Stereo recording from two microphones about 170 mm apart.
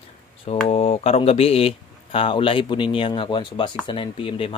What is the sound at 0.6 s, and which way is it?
Speech, 40° left (ahead or behind).